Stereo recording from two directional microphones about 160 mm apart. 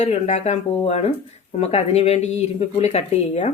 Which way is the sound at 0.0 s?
45° left (ahead or behind).